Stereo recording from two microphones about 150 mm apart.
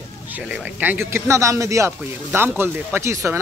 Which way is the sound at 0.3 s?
5° right (ahead or behind).